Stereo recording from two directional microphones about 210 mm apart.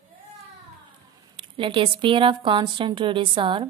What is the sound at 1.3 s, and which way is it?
Speech, 25° right (ahead or behind).